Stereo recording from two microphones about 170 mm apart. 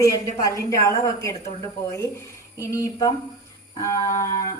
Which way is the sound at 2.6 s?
15° left (ahead or behind).